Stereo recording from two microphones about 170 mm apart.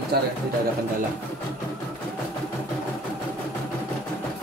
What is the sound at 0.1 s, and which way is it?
Speech, 65° right (ahead or behind).